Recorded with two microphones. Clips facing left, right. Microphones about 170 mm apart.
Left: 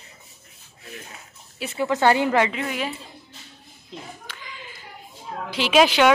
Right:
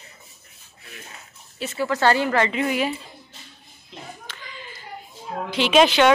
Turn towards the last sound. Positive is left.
turn(degrees=5)  # may be behind; listen again after turning